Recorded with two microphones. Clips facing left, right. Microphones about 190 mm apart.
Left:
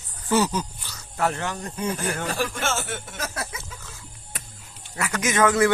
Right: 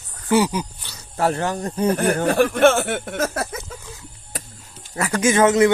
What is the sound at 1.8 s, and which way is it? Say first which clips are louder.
Speech: right 9 dB; 60° right (ahead or behind).